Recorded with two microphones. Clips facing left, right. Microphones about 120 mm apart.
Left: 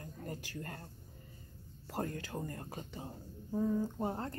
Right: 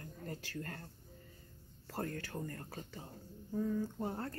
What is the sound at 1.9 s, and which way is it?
Speech, 20° left (ahead or behind).